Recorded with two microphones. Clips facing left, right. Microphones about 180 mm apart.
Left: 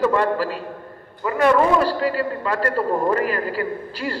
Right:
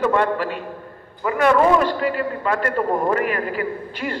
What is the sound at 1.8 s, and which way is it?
A man's voice, 35° left (ahead or behind).